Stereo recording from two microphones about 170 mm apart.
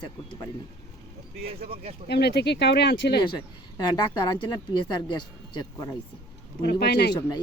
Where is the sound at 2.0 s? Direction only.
75° left (ahead or behind).